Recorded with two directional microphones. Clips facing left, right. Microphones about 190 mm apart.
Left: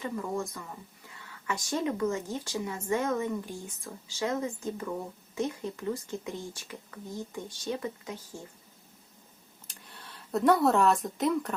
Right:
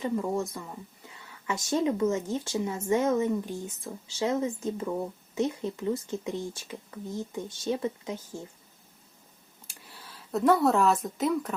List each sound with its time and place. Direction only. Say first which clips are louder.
0.0 s speech: right 4 dB; 25° right (ahead or behind)
9.6 s speech: right 1 dB; 5° right (ahead or behind)